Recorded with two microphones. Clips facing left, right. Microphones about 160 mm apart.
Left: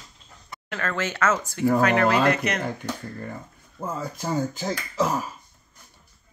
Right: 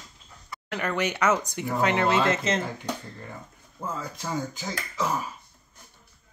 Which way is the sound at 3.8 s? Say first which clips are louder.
Left 3 dB; 40° left (ahead or behind).